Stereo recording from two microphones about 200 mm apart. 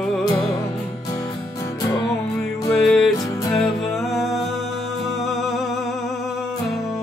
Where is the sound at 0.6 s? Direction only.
15° left (ahead or behind).